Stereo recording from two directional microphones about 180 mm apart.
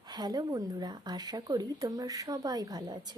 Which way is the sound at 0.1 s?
20° right (ahead or behind).